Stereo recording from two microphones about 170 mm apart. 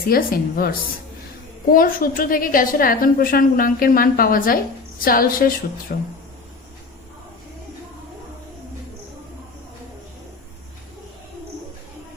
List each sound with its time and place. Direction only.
0.1 s a woman's voice: 60° left (ahead or behind)
1.7 s a woman's voice: 55° left (ahead or behind)